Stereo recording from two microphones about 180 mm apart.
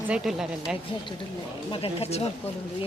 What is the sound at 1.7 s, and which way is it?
Speech, 35° left (ahead or behind).